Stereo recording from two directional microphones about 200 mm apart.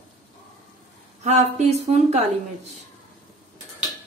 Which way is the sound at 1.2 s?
35° right (ahead or behind).